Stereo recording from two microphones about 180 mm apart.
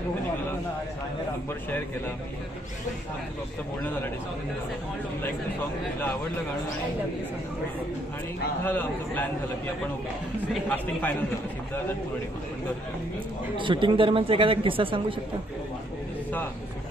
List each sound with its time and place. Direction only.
8.6 s a man's voice: 10° left (ahead or behind)
10.5 s a man's voice: 10° left (ahead or behind)
13.6 s speech: 25° right (ahead or behind)